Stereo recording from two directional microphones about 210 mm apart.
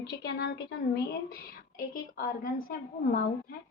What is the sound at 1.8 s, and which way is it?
Speech, 40° left (ahead or behind).